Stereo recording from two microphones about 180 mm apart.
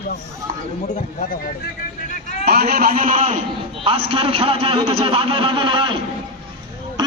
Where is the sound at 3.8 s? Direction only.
30° right (ahead or behind).